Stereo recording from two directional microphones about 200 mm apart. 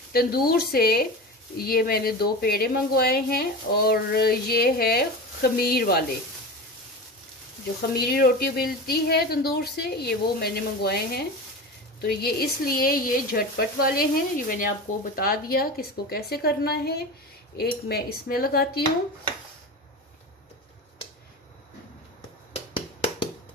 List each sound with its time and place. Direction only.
0.1 s speech: 50° left (ahead or behind)
7.9 s speech: 50° left (ahead or behind)
22.5 s a sound: 30° left (ahead or behind)